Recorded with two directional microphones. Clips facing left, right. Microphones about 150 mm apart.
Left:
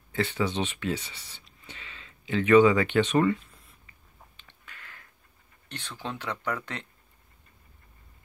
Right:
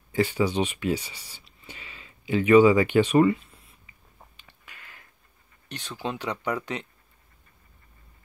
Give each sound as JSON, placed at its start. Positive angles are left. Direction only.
{"t": 0.1, "sound": "speech", "side_deg": -10}
{"t": 4.4, "sound": "a sound", "side_deg": -10}
{"t": 5.7, "sound": "speech", "side_deg": -10}